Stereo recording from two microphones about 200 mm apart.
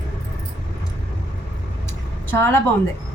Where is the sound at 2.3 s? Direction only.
10° left (ahead or behind).